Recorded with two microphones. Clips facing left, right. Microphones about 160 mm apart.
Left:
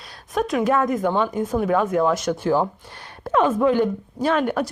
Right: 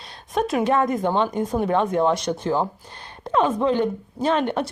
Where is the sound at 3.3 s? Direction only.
20° right (ahead or behind).